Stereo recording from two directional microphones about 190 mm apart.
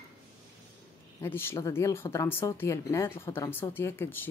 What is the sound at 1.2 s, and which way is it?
A woman's voice, 10° left (ahead or behind).